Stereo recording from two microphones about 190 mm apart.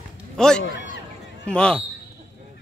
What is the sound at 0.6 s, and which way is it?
Speech, 75° left (ahead or behind).